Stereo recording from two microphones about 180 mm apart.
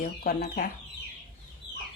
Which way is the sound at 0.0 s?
55° left (ahead or behind).